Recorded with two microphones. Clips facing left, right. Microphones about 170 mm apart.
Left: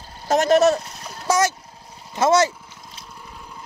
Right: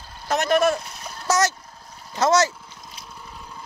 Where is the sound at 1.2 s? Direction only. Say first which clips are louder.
Left 2 dB; 15° left (ahead or behind).